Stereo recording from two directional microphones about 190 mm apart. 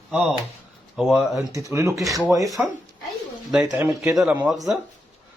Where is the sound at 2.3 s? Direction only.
20° right (ahead or behind).